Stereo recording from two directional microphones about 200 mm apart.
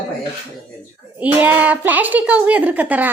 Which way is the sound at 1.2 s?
10° right (ahead or behind).